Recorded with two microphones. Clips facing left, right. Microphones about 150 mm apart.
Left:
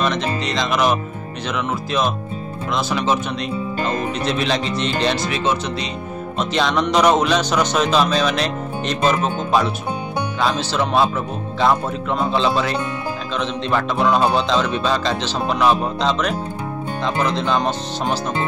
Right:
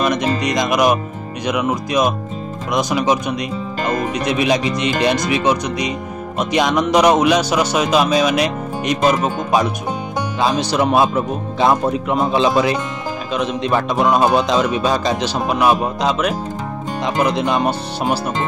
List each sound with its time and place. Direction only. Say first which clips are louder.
0.0 s music: right 3 dB; 15° right (ahead or behind)
1.5 s speech: right 4 dB; 15° right (ahead or behind)